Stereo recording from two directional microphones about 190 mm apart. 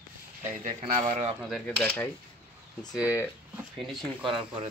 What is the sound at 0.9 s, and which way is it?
Speech, 45° right (ahead or behind).